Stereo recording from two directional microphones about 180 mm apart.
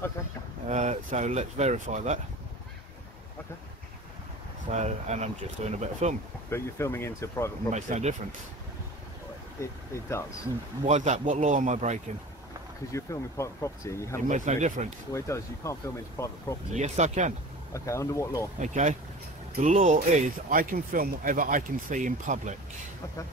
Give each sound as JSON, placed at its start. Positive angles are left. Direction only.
{"t": 0.7, "sound": "speech", "side_deg": -40}
{"t": 4.6, "sound": "speech", "side_deg": -40}
{"t": 6.5, "sound": "speech", "side_deg": 15}
{"t": 7.7, "sound": "speech", "side_deg": -40}
{"t": 9.6, "sound": "speech", "side_deg": 15}
{"t": 10.9, "sound": "speech", "side_deg": -40}
{"t": 12.9, "sound": "speech", "side_deg": 15}
{"t": 14.2, "sound": "speech", "side_deg": -45}
{"t": 15.1, "sound": "speech", "side_deg": 15}
{"t": 16.7, "sound": "speech", "side_deg": -40}
{"t": 17.7, "sound": "speech", "side_deg": 15}
{"t": 18.6, "sound": "speech", "side_deg": -40}